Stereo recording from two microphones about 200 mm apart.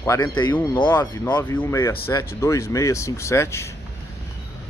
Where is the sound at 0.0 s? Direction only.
15° left (ahead or behind).